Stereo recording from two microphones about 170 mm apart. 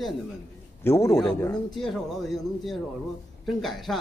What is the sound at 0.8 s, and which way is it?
Speech, 15° left (ahead or behind).